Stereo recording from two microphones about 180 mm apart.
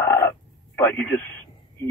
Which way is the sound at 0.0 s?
15° left (ahead or behind).